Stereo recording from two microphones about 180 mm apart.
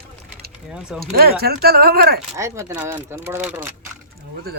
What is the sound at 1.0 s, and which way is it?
Speech, 60° right (ahead or behind).